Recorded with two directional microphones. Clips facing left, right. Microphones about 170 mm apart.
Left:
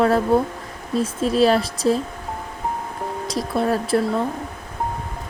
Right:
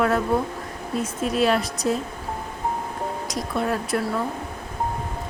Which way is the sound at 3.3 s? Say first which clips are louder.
Left 5 dB; 35° left (ahead or behind).